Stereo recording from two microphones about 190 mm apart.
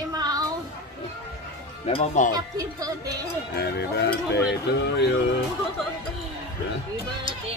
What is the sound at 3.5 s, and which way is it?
Speech, 60° left (ahead or behind).